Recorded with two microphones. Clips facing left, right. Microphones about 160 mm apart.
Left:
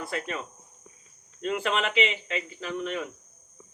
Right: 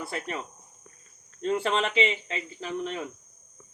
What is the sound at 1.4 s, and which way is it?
Speech, 30° right (ahead or behind).